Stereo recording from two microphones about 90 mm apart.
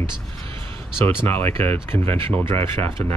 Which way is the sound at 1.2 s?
25° left (ahead or behind).